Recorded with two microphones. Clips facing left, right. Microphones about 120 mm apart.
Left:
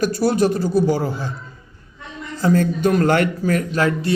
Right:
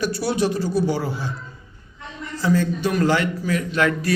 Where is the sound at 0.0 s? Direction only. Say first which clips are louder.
Left 4 dB; 45° left (ahead or behind).